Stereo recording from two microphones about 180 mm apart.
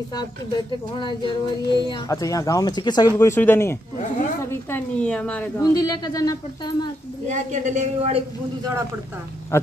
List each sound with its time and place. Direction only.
0.9 s a woman's voice: 25° left (ahead or behind); by 5.5 s 5° left (ahead or behind)
5.6 s speech: 20° left (ahead or behind)
7.2 s a woman's voice: 40° right (ahead or behind)
9.5 s a sound: 15° left (ahead or behind)